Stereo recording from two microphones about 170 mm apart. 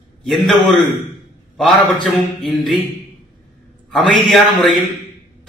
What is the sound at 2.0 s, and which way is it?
Speech, centre (ahead or behind).